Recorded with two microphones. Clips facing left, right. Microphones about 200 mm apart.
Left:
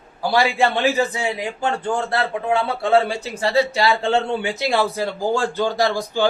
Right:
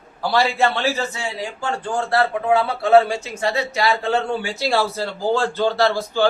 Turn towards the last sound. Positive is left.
turn(degrees=15)  # may be behind; listen again after turning